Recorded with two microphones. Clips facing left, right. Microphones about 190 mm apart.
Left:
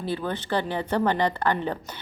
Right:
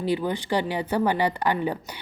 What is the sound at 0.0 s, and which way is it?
A woman's voice, 15° right (ahead or behind).